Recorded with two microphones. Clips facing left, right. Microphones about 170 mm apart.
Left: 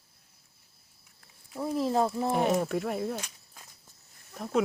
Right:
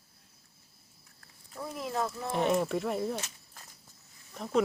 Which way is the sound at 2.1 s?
25° left (ahead or behind).